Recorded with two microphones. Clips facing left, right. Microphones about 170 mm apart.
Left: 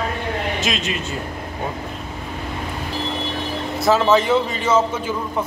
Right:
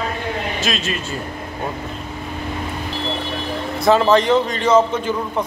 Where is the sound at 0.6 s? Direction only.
20° left (ahead or behind).